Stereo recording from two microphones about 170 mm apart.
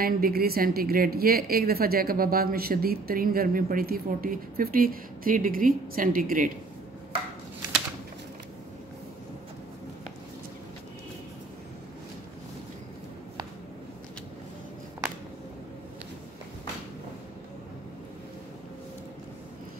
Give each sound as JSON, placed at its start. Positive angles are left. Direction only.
{"t": 0.0, "sound": "a woman's voice", "side_deg": -60}